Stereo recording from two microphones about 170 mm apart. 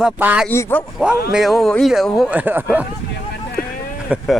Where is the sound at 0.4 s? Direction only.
10° left (ahead or behind).